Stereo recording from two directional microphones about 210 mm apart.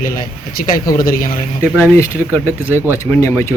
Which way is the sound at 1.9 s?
10° left (ahead or behind).